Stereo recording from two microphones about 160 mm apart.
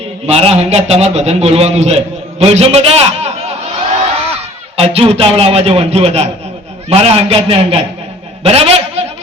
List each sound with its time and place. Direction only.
0.3 s a man's voice: 40° right (ahead or behind)
4.8 s a man's voice: 40° right (ahead or behind)
8.4 s a sound: 40° right (ahead or behind)